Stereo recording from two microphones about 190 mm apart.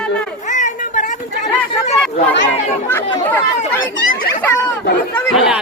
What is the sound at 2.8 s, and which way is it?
Speech, 10° left (ahead or behind).